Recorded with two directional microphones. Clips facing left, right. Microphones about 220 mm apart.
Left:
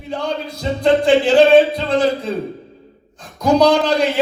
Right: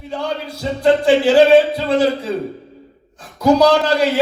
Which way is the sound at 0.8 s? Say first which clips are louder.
Even; 5° right (ahead or behind).